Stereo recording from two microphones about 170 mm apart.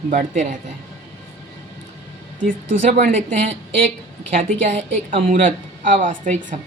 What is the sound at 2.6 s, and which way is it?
Speech, 90° right.